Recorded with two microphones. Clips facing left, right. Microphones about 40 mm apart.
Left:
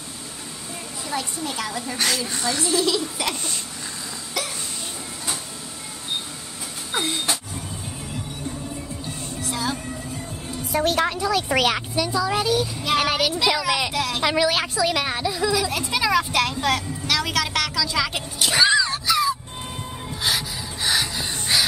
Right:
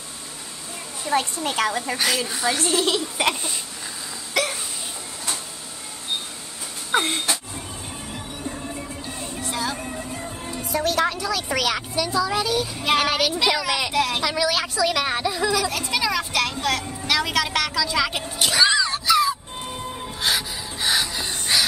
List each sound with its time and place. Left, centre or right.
1.1 s a woman's voice: right
2.0 s a woman's voice: centre
2.5 s a woman's voice: right
4.3 s hiccup: right
6.9 s a sound: right
9.5 s speech: centre
10.7 s a woman's voice: left
11.9 s speech: centre
12.8 s a woman's voice: centre
14.2 s a woman's voice: left
15.0 s speech: centre
15.9 s a woman's voice: centre
18.6 s music: centre
20.2 s gasp: centre